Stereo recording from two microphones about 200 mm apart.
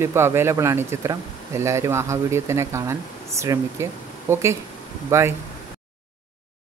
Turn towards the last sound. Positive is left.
turn(degrees=-15)  # may be behind; listen again after turning